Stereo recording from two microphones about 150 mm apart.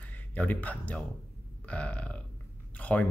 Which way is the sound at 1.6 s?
10° left (ahead or behind).